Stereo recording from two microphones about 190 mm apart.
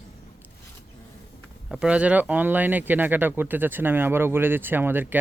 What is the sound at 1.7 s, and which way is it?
Speech, 5° right (ahead or behind).